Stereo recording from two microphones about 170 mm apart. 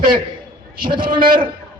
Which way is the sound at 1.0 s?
55° right (ahead or behind).